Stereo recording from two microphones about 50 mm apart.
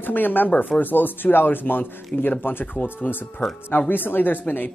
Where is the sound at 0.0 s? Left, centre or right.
Left.